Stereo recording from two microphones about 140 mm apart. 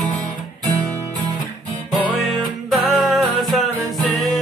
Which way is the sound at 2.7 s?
Centre (ahead or behind).